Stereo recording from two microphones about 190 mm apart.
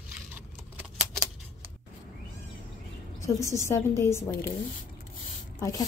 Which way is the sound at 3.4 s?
15° left (ahead or behind).